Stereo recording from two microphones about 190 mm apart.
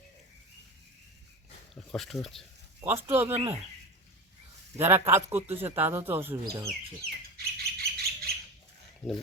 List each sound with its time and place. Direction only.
1.7 s speech: centre (ahead or behind)
2.8 s a man's voice: 10° right (ahead or behind)
4.8 s a man's voice: 10° right (ahead or behind)
7.3 s bird: 55° right (ahead or behind)